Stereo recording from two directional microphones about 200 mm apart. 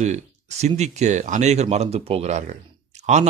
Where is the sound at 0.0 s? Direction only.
35° right (ahead or behind).